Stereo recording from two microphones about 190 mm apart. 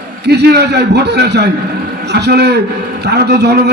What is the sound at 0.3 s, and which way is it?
A man's voice, 60° right (ahead or behind).